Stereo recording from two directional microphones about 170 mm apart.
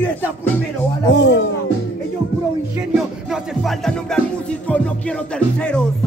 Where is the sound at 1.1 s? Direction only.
90° left.